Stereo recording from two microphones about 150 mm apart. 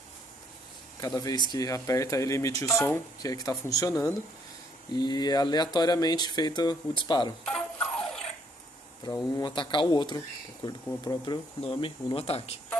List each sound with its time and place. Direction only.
1.0 s speech: 25° left (ahead or behind)
7.4 s clock: 5° left (ahead or behind)
9.0 s speech: 25° left (ahead or behind)